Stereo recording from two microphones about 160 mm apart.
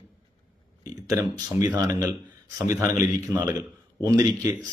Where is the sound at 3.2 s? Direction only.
20° right (ahead or behind).